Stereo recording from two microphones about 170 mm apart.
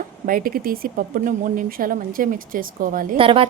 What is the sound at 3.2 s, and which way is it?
Speech, 30° right (ahead or behind).